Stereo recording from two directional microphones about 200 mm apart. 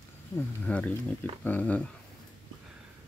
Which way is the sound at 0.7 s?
5° left (ahead or behind).